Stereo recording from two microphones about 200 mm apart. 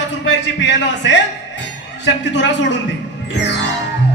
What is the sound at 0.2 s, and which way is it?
A man's voice, 65° left (ahead or behind).